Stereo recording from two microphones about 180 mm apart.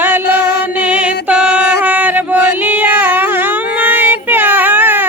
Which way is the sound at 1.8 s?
10° right (ahead or behind).